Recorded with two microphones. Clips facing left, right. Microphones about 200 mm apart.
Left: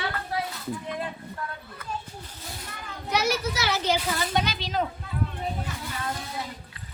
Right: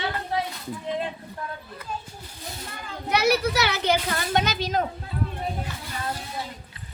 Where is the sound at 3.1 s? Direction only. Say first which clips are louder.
Right 4 dB; 65° right (ahead or behind); by 4.8 s 45° right (ahead or behind).